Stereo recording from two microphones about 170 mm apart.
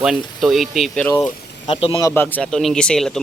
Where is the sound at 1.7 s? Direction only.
35° left (ahead or behind).